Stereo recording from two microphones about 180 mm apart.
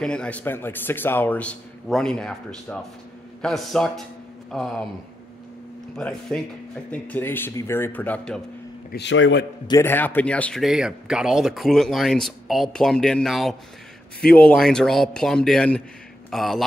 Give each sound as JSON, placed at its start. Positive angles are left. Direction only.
{"t": 0.0, "sound": "a man's voice", "side_deg": 5}
{"t": 5.9, "sound": "a man's voice", "side_deg": 5}
{"t": 8.9, "sound": "a man's voice", "side_deg": 85}
{"t": 9.7, "sound": "speech", "side_deg": 15}